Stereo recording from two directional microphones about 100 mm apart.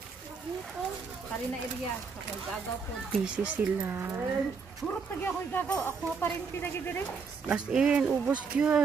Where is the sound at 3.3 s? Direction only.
15° right (ahead or behind).